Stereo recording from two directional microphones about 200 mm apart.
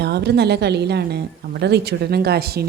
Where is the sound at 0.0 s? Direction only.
55° right (ahead or behind).